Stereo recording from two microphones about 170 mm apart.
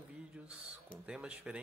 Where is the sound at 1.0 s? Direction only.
5° right (ahead or behind).